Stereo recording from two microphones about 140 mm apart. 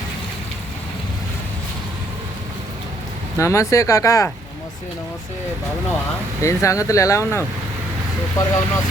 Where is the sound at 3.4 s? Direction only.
20° left (ahead or behind).